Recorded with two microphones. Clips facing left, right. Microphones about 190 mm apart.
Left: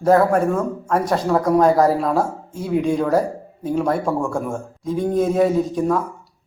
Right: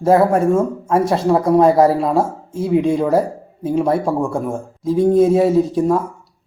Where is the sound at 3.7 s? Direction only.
25° right (ahead or behind).